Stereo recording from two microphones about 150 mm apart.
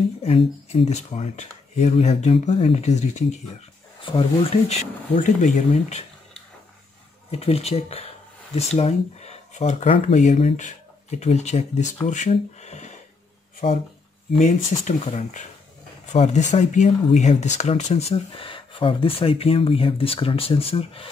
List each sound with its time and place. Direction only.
0.2 s speech: 40° left (ahead or behind)
4.0 s speech: 35° left (ahead or behind)
7.2 s speech: 40° left (ahead or behind)